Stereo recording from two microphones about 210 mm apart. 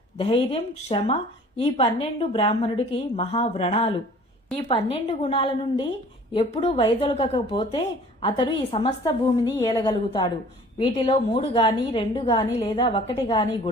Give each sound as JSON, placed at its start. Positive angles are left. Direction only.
{"t": 0.2, "sound": "a woman's voice", "side_deg": 25}